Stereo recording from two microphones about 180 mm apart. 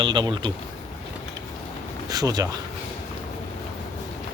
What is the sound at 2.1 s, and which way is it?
Speech, 20° right (ahead or behind).